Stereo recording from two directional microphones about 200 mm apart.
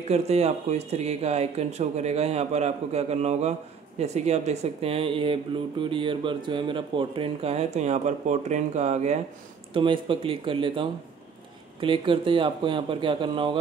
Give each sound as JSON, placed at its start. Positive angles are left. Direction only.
{"t": 0.1, "sound": "speech", "side_deg": -30}